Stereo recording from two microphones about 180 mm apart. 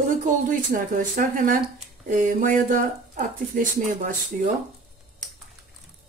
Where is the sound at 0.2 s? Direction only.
45° right (ahead or behind).